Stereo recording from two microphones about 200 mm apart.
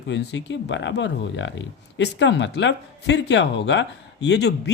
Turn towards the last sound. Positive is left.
turn(degrees=60)  # may be behind; listen again after turning